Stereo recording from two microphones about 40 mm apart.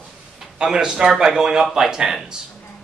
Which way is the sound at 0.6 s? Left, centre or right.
Centre.